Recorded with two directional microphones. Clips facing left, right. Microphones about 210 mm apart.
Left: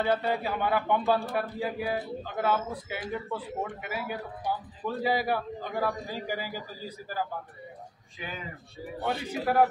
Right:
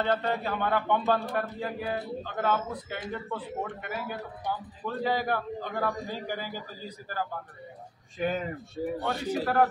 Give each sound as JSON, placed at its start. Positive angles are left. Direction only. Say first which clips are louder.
{"t": 0.0, "sound": "speech", "louder": "left 1 dB", "side_deg": 10}
{"t": 8.2, "sound": "speech", "louder": "right 10 dB", "side_deg": -50}
{"t": 9.0, "sound": "speech", "louder": "left 3 dB", "side_deg": 10}